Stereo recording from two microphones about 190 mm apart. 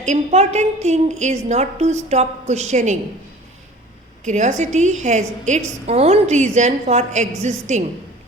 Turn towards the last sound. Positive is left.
turn(degrees=-35)  # may be behind; listen again after turning